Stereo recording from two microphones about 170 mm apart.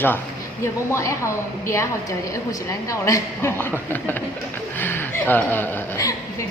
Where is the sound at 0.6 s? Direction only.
15° left (ahead or behind).